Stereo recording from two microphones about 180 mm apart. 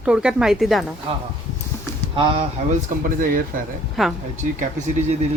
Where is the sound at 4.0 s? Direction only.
Centre (ahead or behind).